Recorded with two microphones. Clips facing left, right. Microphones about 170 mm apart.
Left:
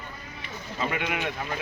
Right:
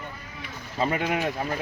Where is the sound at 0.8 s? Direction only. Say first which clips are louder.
Right 4 dB; 35° right (ahead or behind).